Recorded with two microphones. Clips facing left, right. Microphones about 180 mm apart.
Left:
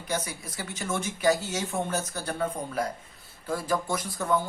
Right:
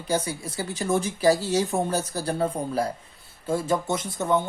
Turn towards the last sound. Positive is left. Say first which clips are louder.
# right 3 dB
turn(degrees=-20)  # may be behind; listen again after turning